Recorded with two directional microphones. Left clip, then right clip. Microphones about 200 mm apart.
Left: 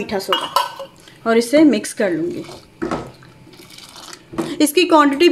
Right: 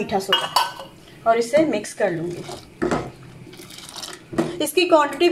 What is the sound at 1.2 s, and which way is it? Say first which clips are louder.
Speech: left 4 dB; 55° left (ahead or behind).